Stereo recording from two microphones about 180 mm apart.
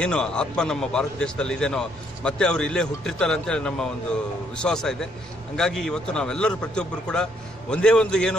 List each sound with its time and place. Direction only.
0.0 s a man's voice: 5° left (ahead or behind)